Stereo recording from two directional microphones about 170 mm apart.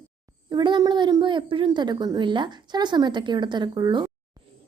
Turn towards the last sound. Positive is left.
turn(degrees=-25)  # may be behind; listen again after turning